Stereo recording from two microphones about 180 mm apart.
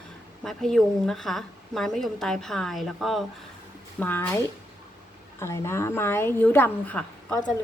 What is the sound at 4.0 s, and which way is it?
A woman's voice, 10° left (ahead or behind).